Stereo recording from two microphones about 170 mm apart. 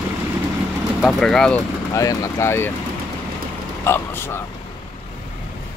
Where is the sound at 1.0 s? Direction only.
Centre (ahead or behind).